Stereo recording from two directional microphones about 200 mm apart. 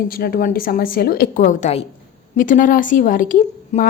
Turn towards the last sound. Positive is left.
turn(degrees=40)  # may be behind; listen again after turning